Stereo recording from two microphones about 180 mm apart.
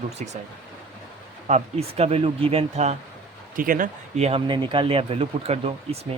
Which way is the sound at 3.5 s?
50° right (ahead or behind).